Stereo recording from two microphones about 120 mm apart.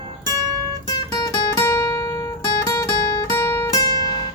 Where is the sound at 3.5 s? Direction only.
25° left (ahead or behind).